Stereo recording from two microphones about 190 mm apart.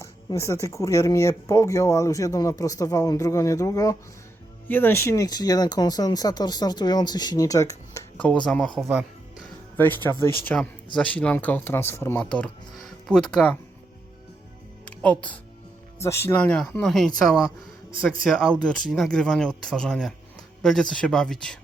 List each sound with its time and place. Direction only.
0.0 s speech: 15° left (ahead or behind)
9.7 s speech: 10° left (ahead or behind)
14.8 s speech: 5° left (ahead or behind)